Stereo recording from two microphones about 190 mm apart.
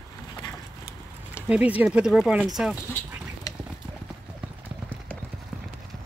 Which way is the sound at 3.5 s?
15° left (ahead or behind).